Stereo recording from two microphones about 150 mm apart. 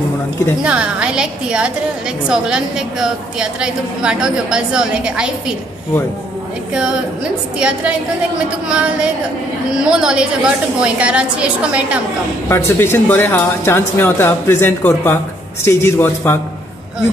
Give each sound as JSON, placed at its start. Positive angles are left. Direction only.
{"t": 0.6, "sound": "a woman's voice", "side_deg": -5}
{"t": 6.7, "sound": "a woman's voice", "side_deg": -5}
{"t": 12.4, "sound": "speech", "side_deg": 15}